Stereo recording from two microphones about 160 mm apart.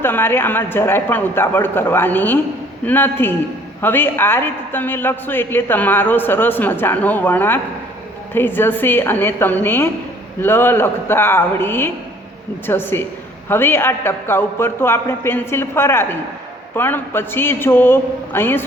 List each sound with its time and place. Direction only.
0.0 s a man's voice: 15° left (ahead or behind)